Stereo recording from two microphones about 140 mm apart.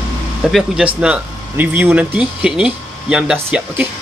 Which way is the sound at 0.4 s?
Centre (ahead or behind).